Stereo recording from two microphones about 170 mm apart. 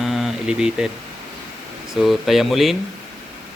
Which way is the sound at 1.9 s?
Centre (ahead or behind).